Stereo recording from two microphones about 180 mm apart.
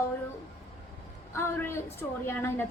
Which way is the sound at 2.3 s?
10° left (ahead or behind).